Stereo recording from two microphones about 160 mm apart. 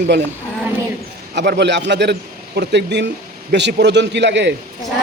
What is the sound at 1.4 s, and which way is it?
A man's voice, 90° right.